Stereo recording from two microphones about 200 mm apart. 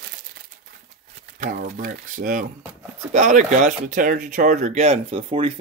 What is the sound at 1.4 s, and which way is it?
Speech, 45° right (ahead or behind).